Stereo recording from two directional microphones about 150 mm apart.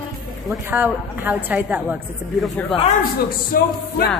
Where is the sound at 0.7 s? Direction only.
10° right (ahead or behind).